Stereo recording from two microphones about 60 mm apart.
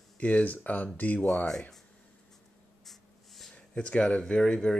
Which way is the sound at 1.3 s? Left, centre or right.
Centre.